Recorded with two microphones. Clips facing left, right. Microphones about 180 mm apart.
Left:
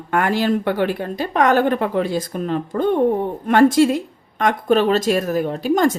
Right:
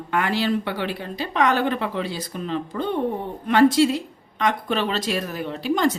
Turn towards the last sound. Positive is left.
turn(degrees=45)  # may be behind; listen again after turning